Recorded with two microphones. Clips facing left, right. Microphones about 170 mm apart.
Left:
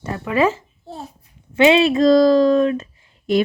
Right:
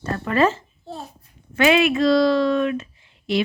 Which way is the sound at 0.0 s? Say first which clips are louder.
Left 1 dB; 10° left (ahead or behind).